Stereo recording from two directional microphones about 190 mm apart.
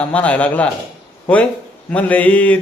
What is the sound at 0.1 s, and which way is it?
Speech, 5° left (ahead or behind).